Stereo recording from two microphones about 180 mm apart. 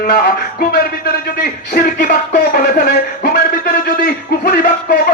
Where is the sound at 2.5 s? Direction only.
55° left (ahead or behind).